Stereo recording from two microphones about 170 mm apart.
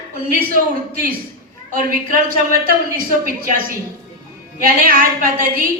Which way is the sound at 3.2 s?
55° right (ahead or behind).